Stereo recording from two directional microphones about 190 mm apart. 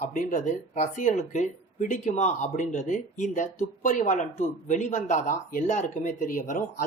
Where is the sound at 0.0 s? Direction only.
45° left (ahead or behind).